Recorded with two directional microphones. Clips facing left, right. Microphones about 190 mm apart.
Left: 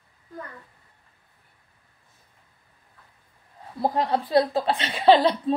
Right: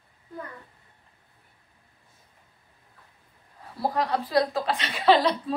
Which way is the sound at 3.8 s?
25° left (ahead or behind).